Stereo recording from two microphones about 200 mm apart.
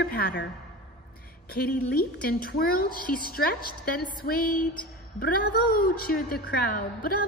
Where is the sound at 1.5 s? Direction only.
50° left (ahead or behind).